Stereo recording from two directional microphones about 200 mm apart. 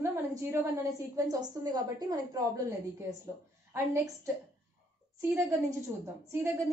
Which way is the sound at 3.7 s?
15° right (ahead or behind).